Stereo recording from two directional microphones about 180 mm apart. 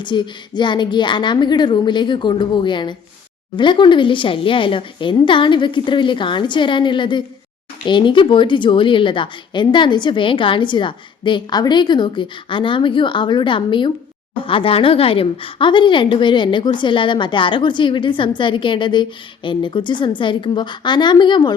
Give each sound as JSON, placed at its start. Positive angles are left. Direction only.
{"t": 0.0, "sound": "speech", "side_deg": 25}